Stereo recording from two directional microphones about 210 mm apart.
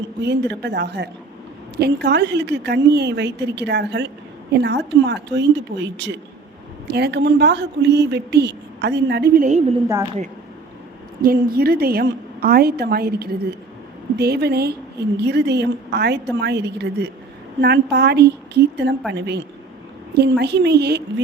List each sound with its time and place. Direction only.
0.2 s speech: 55° right (ahead or behind); by 9.7 s 35° right (ahead or behind)
11.2 s speech: 45° right (ahead or behind)